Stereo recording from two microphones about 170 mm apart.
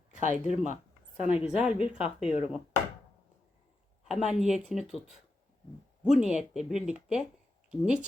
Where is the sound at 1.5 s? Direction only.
5° right (ahead or behind).